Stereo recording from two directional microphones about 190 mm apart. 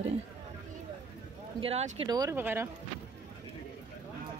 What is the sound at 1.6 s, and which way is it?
Speech, 35° right (ahead or behind).